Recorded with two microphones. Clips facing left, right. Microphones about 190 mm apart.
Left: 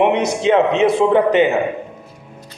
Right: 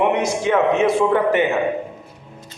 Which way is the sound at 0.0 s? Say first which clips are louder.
Left 3 dB; 20° left (ahead or behind).